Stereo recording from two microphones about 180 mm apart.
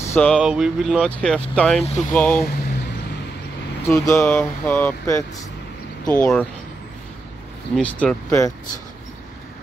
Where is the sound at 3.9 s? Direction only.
10° left (ahead or behind).